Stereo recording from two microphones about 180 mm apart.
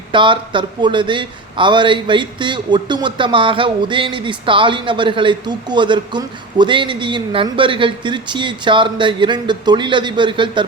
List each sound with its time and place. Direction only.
0.1 s speech: 25° right (ahead or behind)